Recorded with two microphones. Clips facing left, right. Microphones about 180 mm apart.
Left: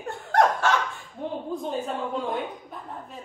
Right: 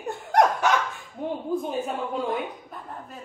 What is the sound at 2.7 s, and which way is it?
Speech, centre (ahead or behind).